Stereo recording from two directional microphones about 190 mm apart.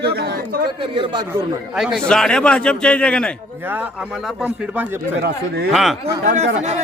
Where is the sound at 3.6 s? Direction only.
10° right (ahead or behind).